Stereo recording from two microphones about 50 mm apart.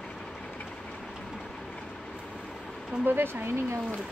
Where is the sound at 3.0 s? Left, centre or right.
Right.